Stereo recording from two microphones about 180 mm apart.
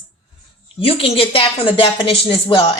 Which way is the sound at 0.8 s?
30° left (ahead or behind).